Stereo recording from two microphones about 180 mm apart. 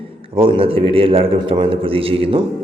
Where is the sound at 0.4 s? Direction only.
30° right (ahead or behind).